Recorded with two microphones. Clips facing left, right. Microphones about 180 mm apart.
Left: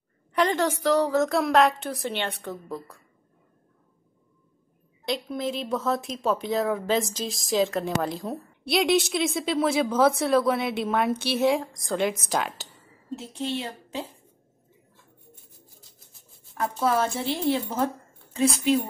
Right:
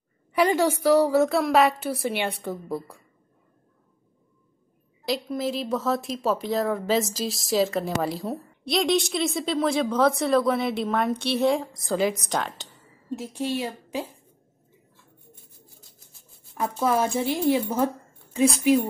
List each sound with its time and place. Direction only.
0.3 s a woman's voice: 10° right (ahead or behind)
5.0 s speech: centre (ahead or behind)
13.2 s a woman's voice: 10° right (ahead or behind)
16.8 s a woman's voice: 15° right (ahead or behind)